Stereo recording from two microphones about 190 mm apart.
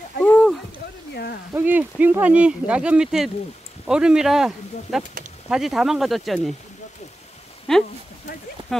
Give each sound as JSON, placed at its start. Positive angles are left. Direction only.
{"t": 0.2, "sound": "a sound", "side_deg": 5}
{"t": 1.5, "sound": "speech", "side_deg": -10}
{"t": 7.7, "sound": "speech", "side_deg": 5}